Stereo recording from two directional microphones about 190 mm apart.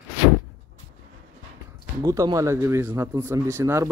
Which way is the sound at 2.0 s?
20° right (ahead or behind).